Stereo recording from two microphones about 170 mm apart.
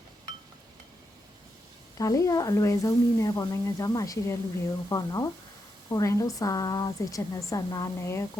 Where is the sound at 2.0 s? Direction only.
20° left (ahead or behind).